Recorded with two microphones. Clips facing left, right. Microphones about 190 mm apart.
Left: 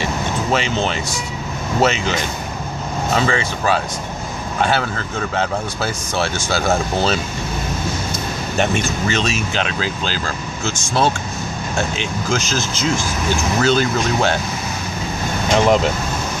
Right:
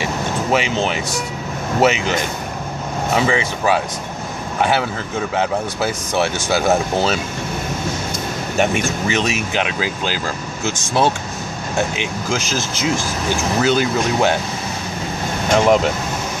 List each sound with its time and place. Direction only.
0.0 s vehicle: 10° right (ahead or behind)
1.8 s speech: 15° right (ahead or behind)
3.2 s speech: 15° right (ahead or behind)
9.0 s speech: 15° right (ahead or behind)
15.5 s speech: 5° right (ahead or behind)